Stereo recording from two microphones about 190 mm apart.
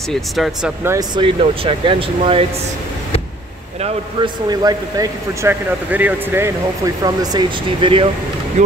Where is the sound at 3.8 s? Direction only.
30° right (ahead or behind).